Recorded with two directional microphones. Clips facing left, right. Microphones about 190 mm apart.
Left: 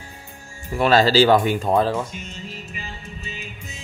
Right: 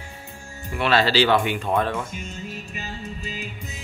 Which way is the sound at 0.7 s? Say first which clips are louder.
Left 4 dB; 40° left (ahead or behind).